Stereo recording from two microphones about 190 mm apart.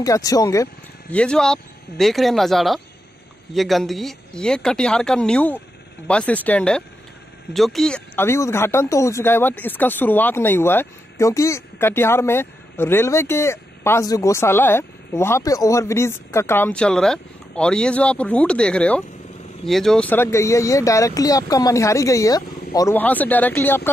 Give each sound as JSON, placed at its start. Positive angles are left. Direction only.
{"t": 0.0, "sound": "speech", "side_deg": 20}
{"t": 1.1, "sound": "speech", "side_deg": 5}